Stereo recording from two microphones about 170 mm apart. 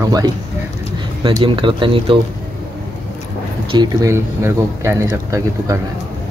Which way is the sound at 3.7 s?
25° right (ahead or behind).